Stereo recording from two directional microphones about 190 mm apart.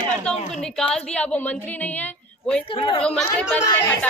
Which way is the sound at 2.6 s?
30° left (ahead or behind).